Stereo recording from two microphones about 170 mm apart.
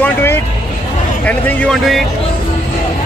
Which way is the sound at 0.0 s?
15° left (ahead or behind).